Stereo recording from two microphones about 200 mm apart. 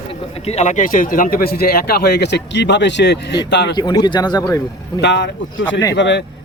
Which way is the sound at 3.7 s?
20° left (ahead or behind).